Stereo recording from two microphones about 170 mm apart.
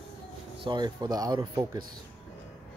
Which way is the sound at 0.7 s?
25° right (ahead or behind).